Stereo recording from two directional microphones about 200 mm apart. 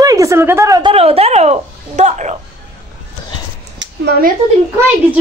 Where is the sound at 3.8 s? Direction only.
55° right (ahead or behind).